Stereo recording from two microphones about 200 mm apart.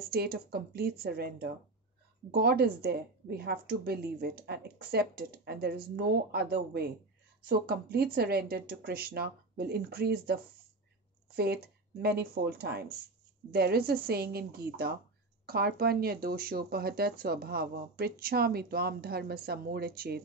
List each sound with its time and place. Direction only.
0.0 s speech: 50° right (ahead or behind)